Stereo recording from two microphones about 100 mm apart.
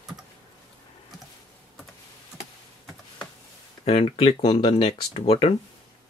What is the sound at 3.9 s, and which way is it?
Speech, 70° left (ahead or behind).